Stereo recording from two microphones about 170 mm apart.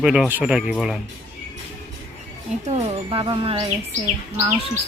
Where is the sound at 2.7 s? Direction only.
40° right (ahead or behind).